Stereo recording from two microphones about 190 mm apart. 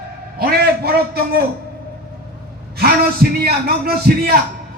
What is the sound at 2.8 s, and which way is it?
A man's voice, 55° right (ahead or behind).